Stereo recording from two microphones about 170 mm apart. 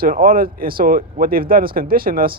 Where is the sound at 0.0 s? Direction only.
60° right (ahead or behind).